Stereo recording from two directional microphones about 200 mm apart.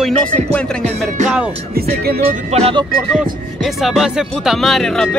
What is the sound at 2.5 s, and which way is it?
Speech, 30° right (ahead or behind).